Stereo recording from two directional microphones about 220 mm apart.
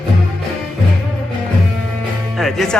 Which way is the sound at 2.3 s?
Centre (ahead or behind).